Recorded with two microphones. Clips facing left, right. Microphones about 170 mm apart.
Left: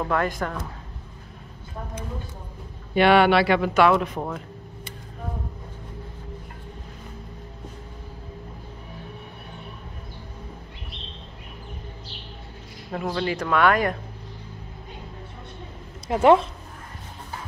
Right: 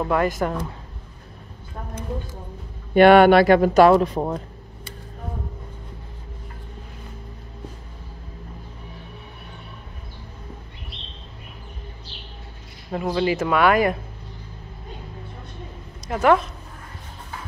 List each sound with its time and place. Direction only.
0.0 s speech: 10° right (ahead or behind)
0.4 s speech: 25° right (ahead or behind)
2.9 s a man's voice: 50° right (ahead or behind); by 4.4 s 35° right (ahead or behind)
12.9 s speech: 5° right (ahead or behind)
16.1 s speech: 25° left (ahead or behind)